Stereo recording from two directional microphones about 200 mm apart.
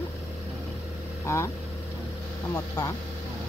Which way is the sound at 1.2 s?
15° left (ahead or behind).